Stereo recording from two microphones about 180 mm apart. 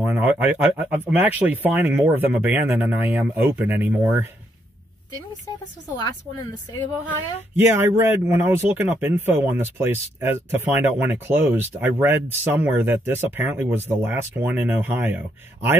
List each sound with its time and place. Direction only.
0.0 s speech: 10° right (ahead or behind)
5.1 s speech: 20° left (ahead or behind)
7.5 s speech: 10° right (ahead or behind)